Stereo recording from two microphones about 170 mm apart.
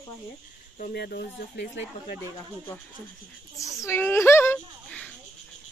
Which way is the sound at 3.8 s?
15° left (ahead or behind).